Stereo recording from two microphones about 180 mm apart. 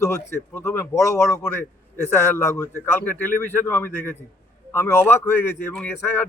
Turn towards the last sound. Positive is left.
turn(degrees=10)  # may be behind; listen again after turning